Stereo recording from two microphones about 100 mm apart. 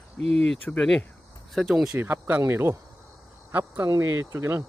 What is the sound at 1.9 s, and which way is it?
Speech, 20° right (ahead or behind).